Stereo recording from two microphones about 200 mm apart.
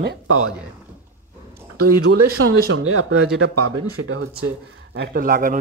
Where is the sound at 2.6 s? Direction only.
75° right (ahead or behind).